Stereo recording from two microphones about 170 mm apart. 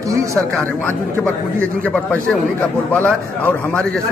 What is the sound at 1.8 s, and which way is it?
A man's voice, 10° left (ahead or behind).